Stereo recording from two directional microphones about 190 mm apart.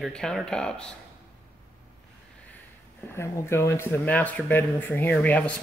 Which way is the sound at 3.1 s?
15° left (ahead or behind).